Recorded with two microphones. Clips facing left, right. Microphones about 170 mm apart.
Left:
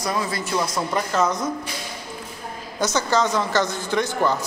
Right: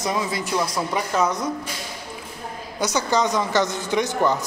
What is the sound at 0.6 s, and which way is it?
Speech, centre (ahead or behind).